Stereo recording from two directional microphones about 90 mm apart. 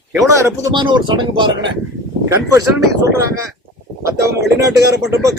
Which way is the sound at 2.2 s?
40° right (ahead or behind).